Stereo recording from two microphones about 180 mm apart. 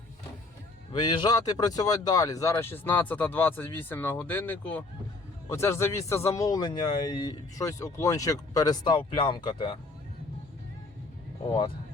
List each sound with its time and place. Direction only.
0.9 s speech: 25° left (ahead or behind)